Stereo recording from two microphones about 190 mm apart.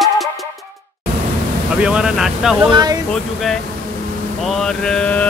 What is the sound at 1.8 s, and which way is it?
Speech, 5° right (ahead or behind).